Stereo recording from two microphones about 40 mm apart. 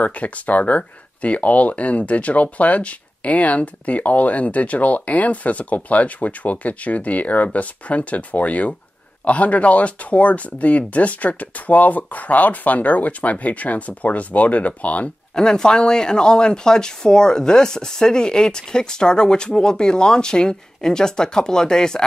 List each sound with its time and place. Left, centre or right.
0.0 s speech: left
15.3 s speech: centre